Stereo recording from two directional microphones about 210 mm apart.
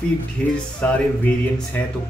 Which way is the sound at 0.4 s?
5° left (ahead or behind).